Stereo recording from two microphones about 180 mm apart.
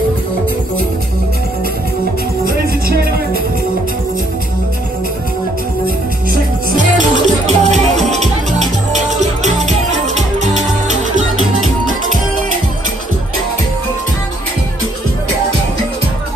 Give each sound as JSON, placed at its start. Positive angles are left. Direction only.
{"t": 2.4, "sound": "music", "side_deg": -55}
{"t": 7.0, "sound": "music", "side_deg": -40}